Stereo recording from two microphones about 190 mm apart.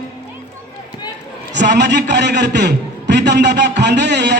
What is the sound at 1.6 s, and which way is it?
A man's voice, 65° right (ahead or behind).